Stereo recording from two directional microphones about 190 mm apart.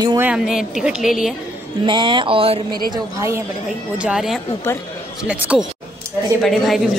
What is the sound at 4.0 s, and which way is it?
A woman's voice, 5° right (ahead or behind).